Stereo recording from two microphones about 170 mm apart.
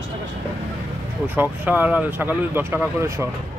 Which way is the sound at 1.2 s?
10° right (ahead or behind).